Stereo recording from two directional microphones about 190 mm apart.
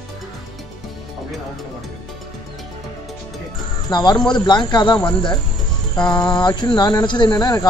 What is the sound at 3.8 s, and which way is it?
Speech, 20° left (ahead or behind).